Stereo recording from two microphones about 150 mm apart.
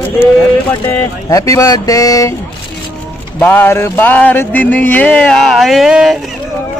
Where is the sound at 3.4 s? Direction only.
15° left (ahead or behind); by 6.1 s 5° right (ahead or behind).